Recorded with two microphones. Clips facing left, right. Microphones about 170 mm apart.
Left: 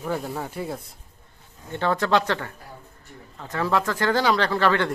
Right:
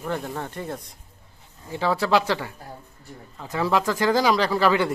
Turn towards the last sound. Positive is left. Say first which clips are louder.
# right 1 dB
turn(degrees=-10)  # may be behind; listen again after turning